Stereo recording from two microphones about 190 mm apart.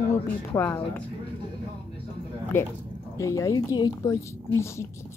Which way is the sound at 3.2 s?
15° left (ahead or behind).